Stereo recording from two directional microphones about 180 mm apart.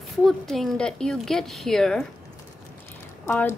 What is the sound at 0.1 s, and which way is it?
A woman's voice, centre (ahead or behind).